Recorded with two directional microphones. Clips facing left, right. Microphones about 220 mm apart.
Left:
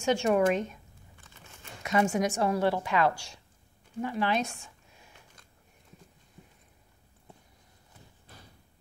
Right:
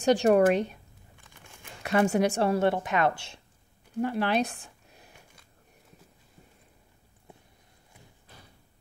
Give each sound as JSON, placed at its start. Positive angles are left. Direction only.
{"t": 0.0, "sound": "speech", "side_deg": -35}
{"t": 1.2, "sound": "a sound", "side_deg": -15}
{"t": 1.8, "sound": "speech", "side_deg": -60}
{"t": 2.4, "sound": "a woman's voice", "side_deg": -25}
{"t": 4.0, "sound": "speech", "side_deg": -60}
{"t": 4.4, "sound": "a sound", "side_deg": -35}